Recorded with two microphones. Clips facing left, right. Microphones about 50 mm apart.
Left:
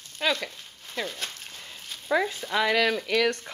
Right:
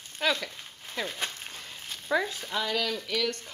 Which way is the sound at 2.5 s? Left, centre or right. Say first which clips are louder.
Left 7 dB; left.